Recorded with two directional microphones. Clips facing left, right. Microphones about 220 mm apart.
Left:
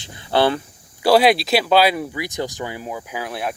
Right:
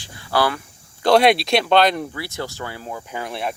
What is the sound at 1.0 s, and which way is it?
Speech, 5° left (ahead or behind).